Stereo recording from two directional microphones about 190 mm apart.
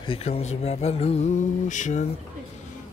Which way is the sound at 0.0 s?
30° left (ahead or behind).